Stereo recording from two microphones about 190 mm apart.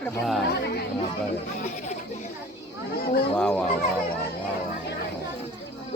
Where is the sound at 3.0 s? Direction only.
50° left (ahead or behind).